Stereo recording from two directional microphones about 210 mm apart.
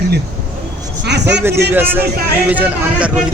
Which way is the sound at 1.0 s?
55° right (ahead or behind).